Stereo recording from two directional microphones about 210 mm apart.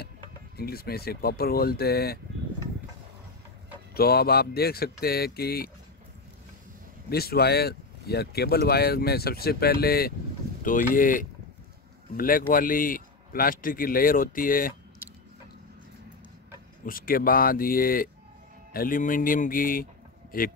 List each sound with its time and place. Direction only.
0.6 s speech: 45° left (ahead or behind)
3.9 s speech: 45° left (ahead or behind)
7.1 s a man's voice: 45° left (ahead or behind)
16.8 s a man's voice: 40° left (ahead or behind)